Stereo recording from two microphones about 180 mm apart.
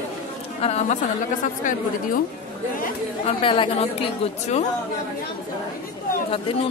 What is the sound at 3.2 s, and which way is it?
Speech, 30° left (ahead or behind).